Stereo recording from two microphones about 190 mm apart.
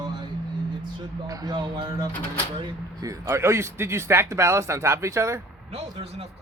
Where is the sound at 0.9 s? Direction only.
20° right (ahead or behind).